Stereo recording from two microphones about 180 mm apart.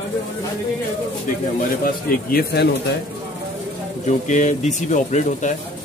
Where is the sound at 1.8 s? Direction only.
55° left (ahead or behind).